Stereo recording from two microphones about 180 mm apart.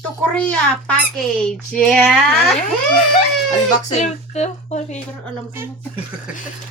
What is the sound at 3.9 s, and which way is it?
Speech, 40° left (ahead or behind).